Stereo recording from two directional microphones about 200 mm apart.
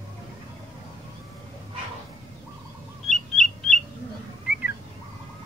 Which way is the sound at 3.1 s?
Centre (ahead or behind).